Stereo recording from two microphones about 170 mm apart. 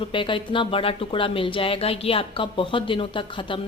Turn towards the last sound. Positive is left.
turn(degrees=30)  # may be behind; listen again after turning